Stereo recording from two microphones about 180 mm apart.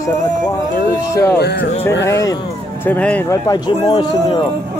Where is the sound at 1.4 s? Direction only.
65° left (ahead or behind).